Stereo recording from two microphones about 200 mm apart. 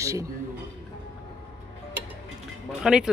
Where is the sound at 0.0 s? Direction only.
15° right (ahead or behind).